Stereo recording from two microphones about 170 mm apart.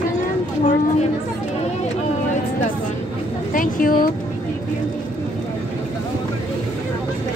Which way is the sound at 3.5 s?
55° left (ahead or behind).